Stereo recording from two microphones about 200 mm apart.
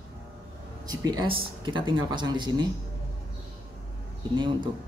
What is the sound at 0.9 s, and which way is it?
Speech, 20° right (ahead or behind).